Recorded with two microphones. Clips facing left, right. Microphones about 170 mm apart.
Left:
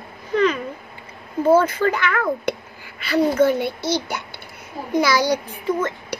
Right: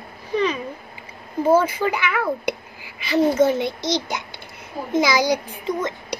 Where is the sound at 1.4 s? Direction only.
10° right (ahead or behind).